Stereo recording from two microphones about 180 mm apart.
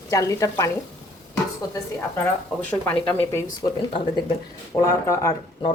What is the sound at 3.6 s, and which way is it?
Frying, 25° left (ahead or behind).